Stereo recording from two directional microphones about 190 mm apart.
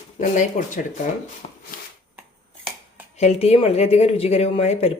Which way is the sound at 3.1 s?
35° left (ahead or behind).